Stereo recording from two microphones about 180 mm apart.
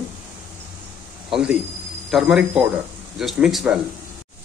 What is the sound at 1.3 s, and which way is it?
A man's voice, 5° right (ahead or behind).